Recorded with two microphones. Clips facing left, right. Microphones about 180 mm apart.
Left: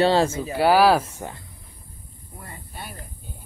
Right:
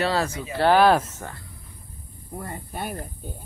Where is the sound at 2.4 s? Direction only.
45° right (ahead or behind).